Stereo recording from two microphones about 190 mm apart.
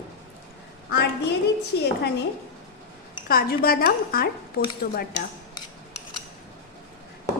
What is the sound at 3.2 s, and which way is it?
Speech, 50° left (ahead or behind).